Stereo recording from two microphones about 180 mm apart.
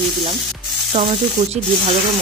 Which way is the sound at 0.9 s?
30° right (ahead or behind).